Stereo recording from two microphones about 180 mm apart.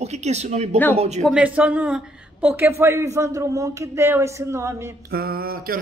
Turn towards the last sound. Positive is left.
turn(degrees=-55)  # may be behind; listen again after turning